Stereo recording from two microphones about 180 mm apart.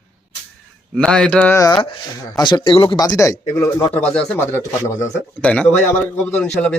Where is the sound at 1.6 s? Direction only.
25° left (ahead or behind).